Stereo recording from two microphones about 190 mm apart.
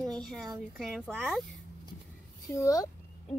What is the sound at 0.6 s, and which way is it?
Speech, centre (ahead or behind).